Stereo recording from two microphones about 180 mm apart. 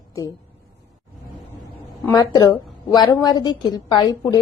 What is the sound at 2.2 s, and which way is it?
A woman's voice, 20° left (ahead or behind).